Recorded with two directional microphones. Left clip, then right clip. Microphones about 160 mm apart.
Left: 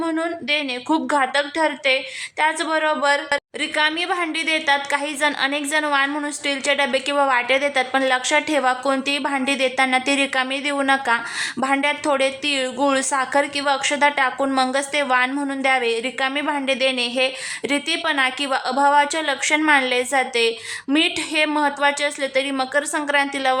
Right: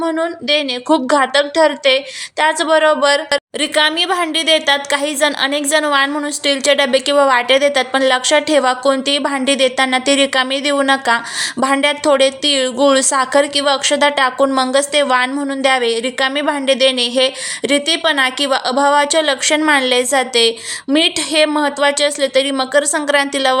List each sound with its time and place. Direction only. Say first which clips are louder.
0.0 s a woman's voice: right 5 dB; 20° right (ahead or behind)